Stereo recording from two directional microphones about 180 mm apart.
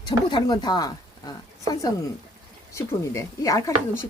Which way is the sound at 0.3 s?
25° left (ahead or behind).